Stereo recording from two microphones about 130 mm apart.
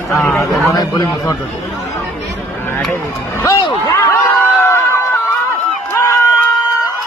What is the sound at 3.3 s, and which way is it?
Speech, 25° left (ahead or behind).